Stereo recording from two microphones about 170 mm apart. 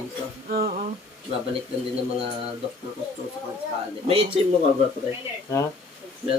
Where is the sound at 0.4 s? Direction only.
60° right (ahead or behind).